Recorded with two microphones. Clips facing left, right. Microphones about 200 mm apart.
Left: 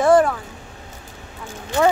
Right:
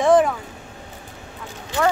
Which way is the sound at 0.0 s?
Centre (ahead or behind).